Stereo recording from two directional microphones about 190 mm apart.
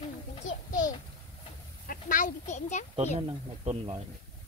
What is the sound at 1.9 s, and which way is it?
Speech, 45° left (ahead or behind).